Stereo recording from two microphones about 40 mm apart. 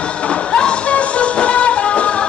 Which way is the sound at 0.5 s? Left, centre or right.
Left.